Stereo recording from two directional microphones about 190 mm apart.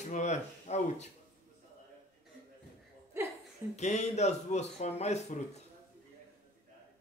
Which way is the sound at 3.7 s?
35° left (ahead or behind).